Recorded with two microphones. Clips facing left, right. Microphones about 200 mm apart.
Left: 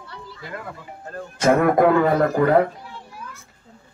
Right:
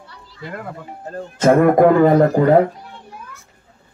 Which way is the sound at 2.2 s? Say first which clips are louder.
Right 5 dB; 30° right (ahead or behind).